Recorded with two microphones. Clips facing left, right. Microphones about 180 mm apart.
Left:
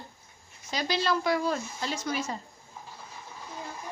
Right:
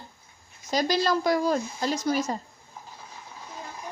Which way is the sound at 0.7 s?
40° right (ahead or behind).